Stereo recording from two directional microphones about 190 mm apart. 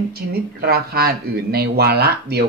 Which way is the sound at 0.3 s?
55° right (ahead or behind).